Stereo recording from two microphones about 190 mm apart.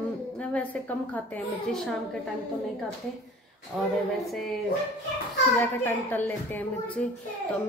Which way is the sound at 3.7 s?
10° right (ahead or behind).